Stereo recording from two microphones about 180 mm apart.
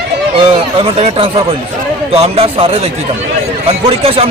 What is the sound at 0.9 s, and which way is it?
A man's voice, 35° right (ahead or behind).